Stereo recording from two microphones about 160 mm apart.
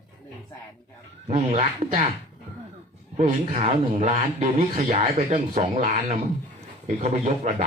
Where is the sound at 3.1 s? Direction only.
40° right (ahead or behind).